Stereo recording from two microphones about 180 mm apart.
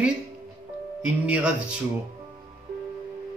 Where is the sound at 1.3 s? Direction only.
5° right (ahead or behind).